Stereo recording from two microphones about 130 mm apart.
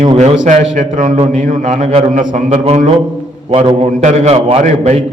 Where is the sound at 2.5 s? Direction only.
55° right (ahead or behind).